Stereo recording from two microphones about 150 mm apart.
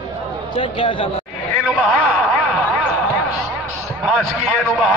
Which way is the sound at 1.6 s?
Centre (ahead or behind).